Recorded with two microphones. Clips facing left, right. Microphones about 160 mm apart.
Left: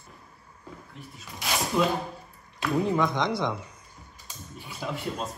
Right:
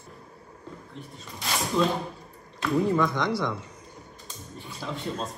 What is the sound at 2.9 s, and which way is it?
Speech, 15° left (ahead or behind).